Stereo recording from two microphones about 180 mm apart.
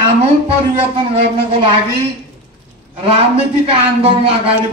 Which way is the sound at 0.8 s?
30° right (ahead or behind).